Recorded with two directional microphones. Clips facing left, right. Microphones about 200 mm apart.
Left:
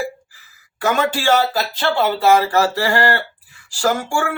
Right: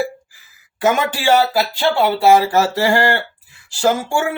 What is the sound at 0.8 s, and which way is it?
Speech, 20° right (ahead or behind).